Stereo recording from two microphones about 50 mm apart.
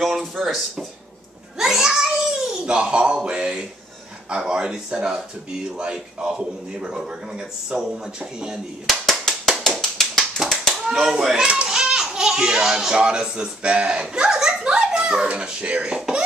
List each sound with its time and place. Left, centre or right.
0.0 s speech: centre
1.6 s a sound: centre
3.3 s a man's voice: centre
9.2 s tap: centre
10.7 s a child's voice: centre